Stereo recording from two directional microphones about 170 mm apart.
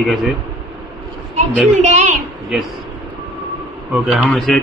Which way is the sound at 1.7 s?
40° right (ahead or behind).